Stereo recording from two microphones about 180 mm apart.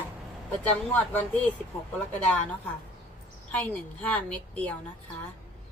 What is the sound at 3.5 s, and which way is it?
Speech, 5° left (ahead or behind).